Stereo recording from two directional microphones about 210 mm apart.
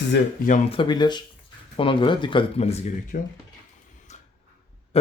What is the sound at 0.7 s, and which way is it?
Speech, 25° left (ahead or behind).